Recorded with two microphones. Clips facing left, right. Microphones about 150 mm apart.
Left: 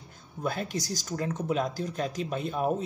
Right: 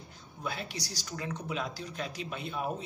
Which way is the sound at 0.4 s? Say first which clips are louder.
Left 7 dB; 45° left (ahead or behind).